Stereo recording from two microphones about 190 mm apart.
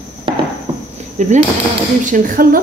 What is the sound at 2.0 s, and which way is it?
Cutlery, 45° right (ahead or behind).